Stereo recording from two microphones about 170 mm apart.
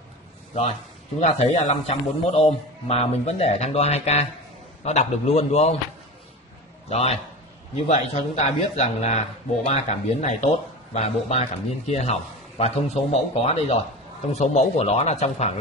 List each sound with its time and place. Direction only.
1.2 s a man's voice: 40° left (ahead or behind)
6.9 s a man's voice: 40° left (ahead or behind)